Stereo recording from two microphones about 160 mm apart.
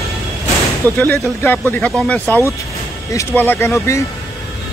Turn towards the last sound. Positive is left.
turn(degrees=15)  # may be behind; listen again after turning